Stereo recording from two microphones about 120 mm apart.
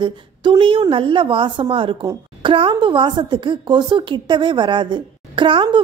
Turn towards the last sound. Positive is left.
turn(degrees=-45)  # may be behind; listen again after turning